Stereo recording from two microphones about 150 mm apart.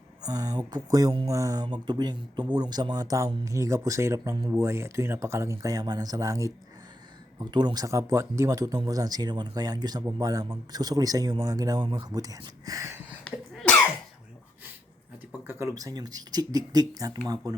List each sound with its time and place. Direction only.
0.2 s speech: 25° right (ahead or behind)
13.2 s a sound: 5° left (ahead or behind)
15.4 s speech: 20° right (ahead or behind)